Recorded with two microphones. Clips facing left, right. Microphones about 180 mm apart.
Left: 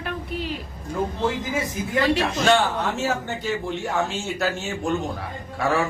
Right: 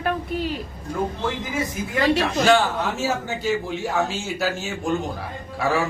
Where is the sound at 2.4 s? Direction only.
Centre (ahead or behind).